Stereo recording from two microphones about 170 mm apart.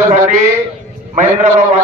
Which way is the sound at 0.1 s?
45° right (ahead or behind).